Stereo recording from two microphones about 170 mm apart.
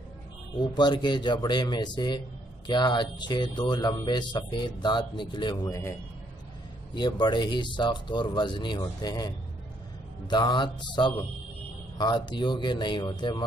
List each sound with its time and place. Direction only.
0.6 s speech: 25° left (ahead or behind)